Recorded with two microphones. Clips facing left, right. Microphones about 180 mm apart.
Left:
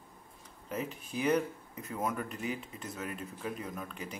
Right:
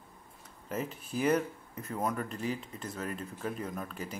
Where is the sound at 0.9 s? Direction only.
40° right (ahead or behind).